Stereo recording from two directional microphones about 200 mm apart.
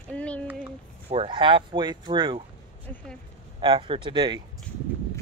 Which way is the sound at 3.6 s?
25° right (ahead or behind).